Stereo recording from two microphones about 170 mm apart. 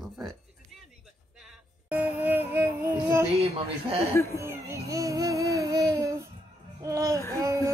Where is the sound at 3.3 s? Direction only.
35° right (ahead or behind).